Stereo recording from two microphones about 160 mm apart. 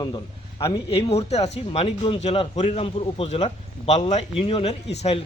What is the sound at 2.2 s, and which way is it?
A man's voice, 45° left (ahead or behind).